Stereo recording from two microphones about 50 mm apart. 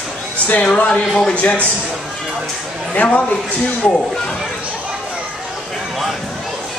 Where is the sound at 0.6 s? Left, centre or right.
Left.